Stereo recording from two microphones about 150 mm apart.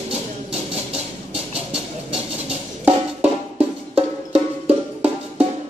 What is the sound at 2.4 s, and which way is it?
Music, 10° right (ahead or behind).